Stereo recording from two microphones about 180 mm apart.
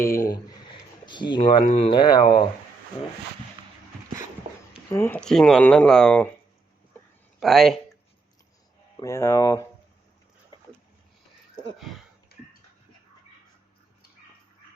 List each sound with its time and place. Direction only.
1.0 s speech: 25° left (ahead or behind)
4.9 s speech: 15° left (ahead or behind)
7.3 s speech: centre (ahead or behind)
9.0 s speech: 15° left (ahead or behind)
11.8 s speech: centre (ahead or behind)